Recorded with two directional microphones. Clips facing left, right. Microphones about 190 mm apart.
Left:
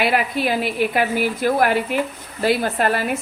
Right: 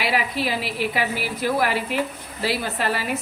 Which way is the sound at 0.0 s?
55° left (ahead or behind).